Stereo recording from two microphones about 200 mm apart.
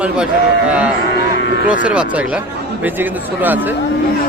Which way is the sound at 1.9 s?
5° right (ahead or behind).